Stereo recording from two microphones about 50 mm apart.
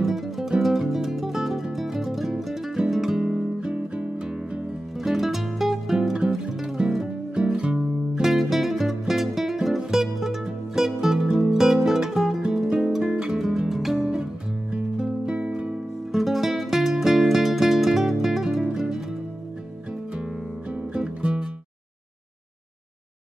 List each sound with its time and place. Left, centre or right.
0.0 s music: centre; by 4.1 s right
5.0 s music: centre
16.1 s music: centre
20.9 s music: centre